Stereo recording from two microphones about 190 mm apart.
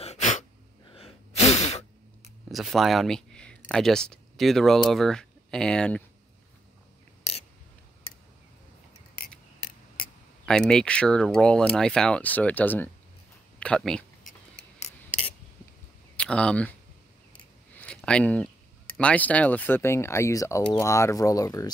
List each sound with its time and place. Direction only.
0.0 s sneeze: 35° left (ahead or behind)
2.5 s speech: centre (ahead or behind)
10.4 s speech: 5° left (ahead or behind)
14.8 s filing: 35° left (ahead or behind)
16.2 s speech: 5° left (ahead or behind)
17.7 s a sound: 5° left (ahead or behind)
18.9 s speech: 5° left (ahead or behind)